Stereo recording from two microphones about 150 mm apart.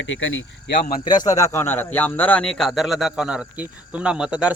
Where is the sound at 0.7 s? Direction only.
90° left.